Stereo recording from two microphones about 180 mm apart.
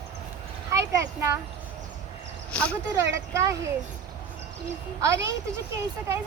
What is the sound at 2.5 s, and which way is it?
Speech, 5° left (ahead or behind).